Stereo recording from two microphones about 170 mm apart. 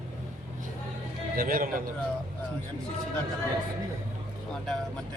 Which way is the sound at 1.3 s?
55° right (ahead or behind).